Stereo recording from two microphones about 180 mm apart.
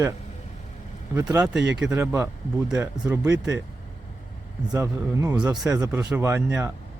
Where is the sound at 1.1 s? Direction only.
15° right (ahead or behind).